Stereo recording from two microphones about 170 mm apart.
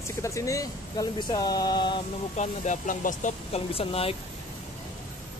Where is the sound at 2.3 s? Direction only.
45° left (ahead or behind).